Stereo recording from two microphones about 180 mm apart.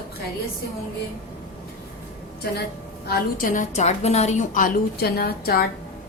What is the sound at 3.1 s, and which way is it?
A woman's voice, 50° left (ahead or behind).